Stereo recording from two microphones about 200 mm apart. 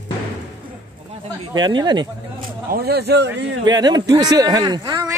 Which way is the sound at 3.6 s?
20° right (ahead or behind).